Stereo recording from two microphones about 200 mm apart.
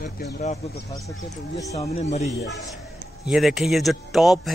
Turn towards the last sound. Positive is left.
turn(degrees=0)  # may be behind; listen again after turning